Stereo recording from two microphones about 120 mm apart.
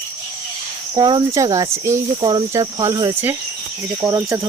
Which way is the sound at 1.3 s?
25° right (ahead or behind).